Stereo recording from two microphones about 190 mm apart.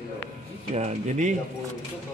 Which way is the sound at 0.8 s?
40° right (ahead or behind).